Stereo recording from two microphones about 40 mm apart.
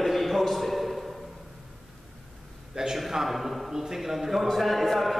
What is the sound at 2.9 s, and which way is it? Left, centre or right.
A man's voice, centre.